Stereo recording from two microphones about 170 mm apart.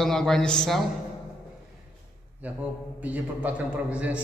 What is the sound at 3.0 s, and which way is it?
A man's voice, 10° right (ahead or behind).